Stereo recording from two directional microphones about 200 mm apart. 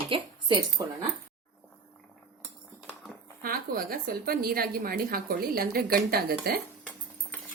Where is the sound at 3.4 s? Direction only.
45° right (ahead or behind).